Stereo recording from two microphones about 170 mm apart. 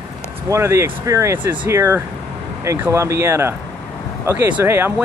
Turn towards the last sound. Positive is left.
turn(degrees=-15)  # may be behind; listen again after turning